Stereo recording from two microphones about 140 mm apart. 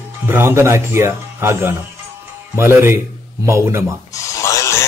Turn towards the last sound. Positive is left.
turn(degrees=20)  # may be behind; listen again after turning